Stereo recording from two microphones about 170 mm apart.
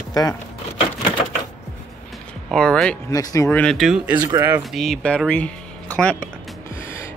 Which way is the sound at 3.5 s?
5° left (ahead or behind).